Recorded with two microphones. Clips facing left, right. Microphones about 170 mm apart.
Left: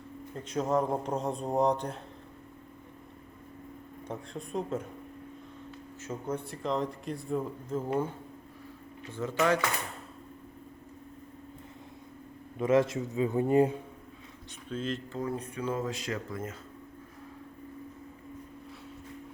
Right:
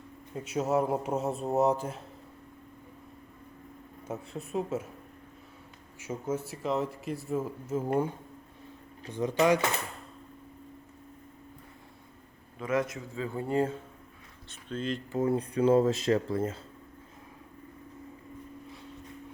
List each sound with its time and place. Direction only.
0.3 s speech: 10° right (ahead or behind)
4.1 s speech: 5° right (ahead or behind)
6.0 s speech: 10° right (ahead or behind)
9.0 s speech: 15° right (ahead or behind)
12.5 s a man's voice: 25° left (ahead or behind)
14.7 s speech: 5° left (ahead or behind)
15.1 s speech: 30° right (ahead or behind)